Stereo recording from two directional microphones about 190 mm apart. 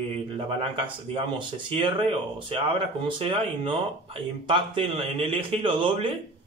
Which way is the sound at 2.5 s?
30° right (ahead or behind).